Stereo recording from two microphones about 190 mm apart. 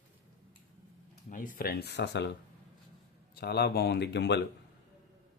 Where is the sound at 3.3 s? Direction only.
60° left (ahead or behind).